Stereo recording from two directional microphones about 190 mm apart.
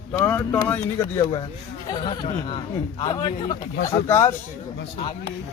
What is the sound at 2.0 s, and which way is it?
A man's voice, 30° left (ahead or behind).